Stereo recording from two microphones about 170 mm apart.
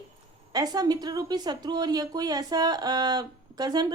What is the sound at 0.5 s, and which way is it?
A woman's voice, 25° right (ahead or behind).